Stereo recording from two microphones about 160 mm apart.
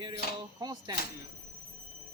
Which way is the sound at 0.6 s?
25° right (ahead or behind).